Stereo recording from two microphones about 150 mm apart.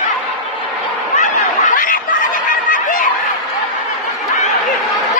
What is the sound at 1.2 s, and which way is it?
Snicker, 60° left (ahead or behind).